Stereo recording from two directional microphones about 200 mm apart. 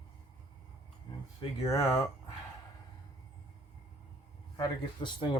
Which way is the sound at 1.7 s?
15° left (ahead or behind).